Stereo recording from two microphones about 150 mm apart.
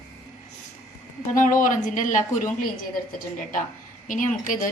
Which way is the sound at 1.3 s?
60° left (ahead or behind).